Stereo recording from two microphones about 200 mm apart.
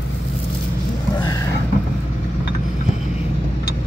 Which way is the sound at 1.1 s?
20° left (ahead or behind).